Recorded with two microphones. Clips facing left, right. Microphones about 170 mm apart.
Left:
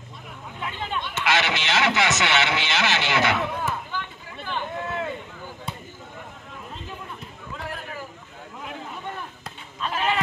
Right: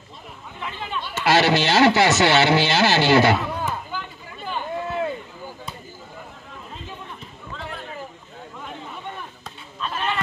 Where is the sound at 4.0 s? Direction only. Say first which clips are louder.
Even; 5° right (ahead or behind).